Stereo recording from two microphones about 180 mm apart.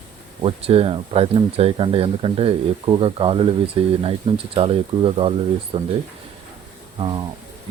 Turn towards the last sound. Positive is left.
turn(degrees=-25)  # may be behind; listen again after turning